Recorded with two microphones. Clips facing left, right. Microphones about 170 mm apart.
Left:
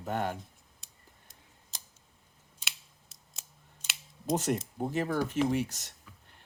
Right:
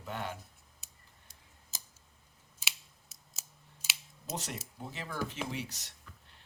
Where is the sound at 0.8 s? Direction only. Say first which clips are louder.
Left 1 dB; 5° right (ahead or behind).